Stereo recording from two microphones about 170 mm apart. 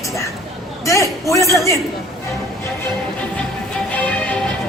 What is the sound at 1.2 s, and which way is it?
Music, 20° left (ahead or behind).